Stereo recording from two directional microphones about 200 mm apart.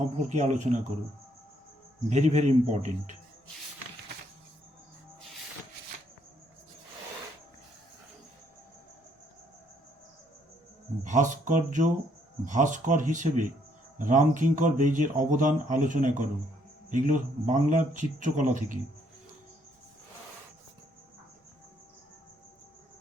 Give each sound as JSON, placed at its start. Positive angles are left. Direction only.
{"t": 0.3, "sound": "a man's voice", "side_deg": -35}
{"t": 2.0, "sound": "a man's voice", "side_deg": -35}
{"t": 11.0, "sound": "a man's voice", "side_deg": -40}